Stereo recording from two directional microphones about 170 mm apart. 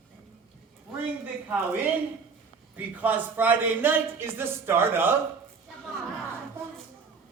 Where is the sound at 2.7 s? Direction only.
10° right (ahead or behind).